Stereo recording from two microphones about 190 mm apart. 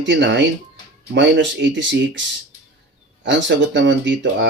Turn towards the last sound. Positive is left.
turn(degrees=-70)  # may be behind; listen again after turning